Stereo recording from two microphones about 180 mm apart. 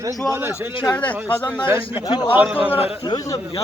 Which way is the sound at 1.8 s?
30° left (ahead or behind).